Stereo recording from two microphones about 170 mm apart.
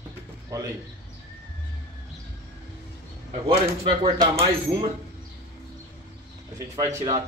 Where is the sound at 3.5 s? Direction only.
30° right (ahead or behind).